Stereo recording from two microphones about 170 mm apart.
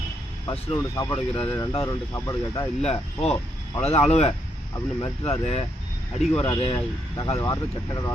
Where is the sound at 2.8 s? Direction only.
35° left (ahead or behind).